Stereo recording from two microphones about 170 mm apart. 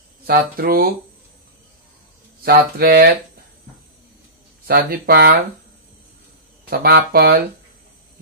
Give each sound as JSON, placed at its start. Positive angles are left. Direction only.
{"t": 0.3, "sound": "speech", "side_deg": -60}
{"t": 2.4, "sound": "speech", "side_deg": -65}
{"t": 4.6, "sound": "speech", "side_deg": -65}
{"t": 6.7, "sound": "speech", "side_deg": -65}